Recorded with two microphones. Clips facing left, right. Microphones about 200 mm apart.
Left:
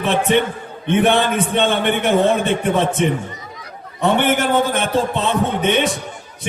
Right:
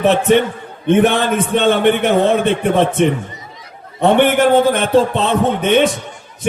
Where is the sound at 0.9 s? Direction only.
50° right (ahead or behind).